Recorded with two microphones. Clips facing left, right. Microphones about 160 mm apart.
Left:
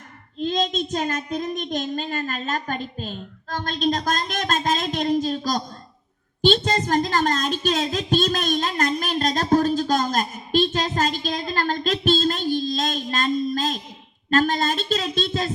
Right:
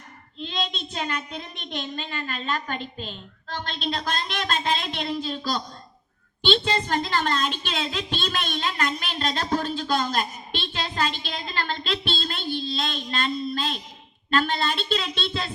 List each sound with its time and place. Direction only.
0.3 s a woman's voice: 40° left (ahead or behind)